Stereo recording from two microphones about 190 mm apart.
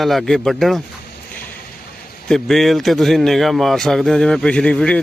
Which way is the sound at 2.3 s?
Centre (ahead or behind).